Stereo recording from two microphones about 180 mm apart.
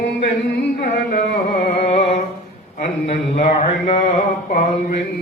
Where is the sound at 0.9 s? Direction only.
50° left (ahead or behind).